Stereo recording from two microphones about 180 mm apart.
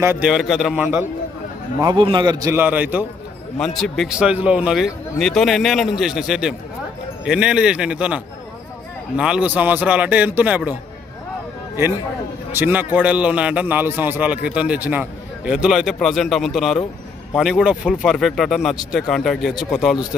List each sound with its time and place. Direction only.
0.0 s a man's voice: 15° right (ahead or behind)
0.3 s a man's voice: centre (ahead or behind)
1.8 s a man's voice: 25° right (ahead or behind)
3.5 s a man's voice: centre (ahead or behind)
12.5 s a man's voice: 10° right (ahead or behind)